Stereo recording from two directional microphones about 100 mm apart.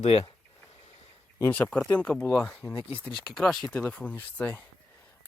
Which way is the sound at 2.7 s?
65° left (ahead or behind).